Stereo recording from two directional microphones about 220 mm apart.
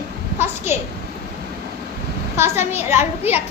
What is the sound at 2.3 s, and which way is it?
Speech, 10° right (ahead or behind).